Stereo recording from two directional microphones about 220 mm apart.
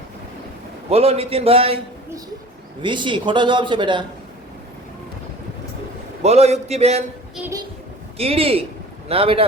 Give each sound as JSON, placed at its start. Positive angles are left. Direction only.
{"t": 0.9, "sound": "a man's voice", "side_deg": -25}
{"t": 6.2, "sound": "a man's voice", "side_deg": -30}
{"t": 8.2, "sound": "a man's voice", "side_deg": -25}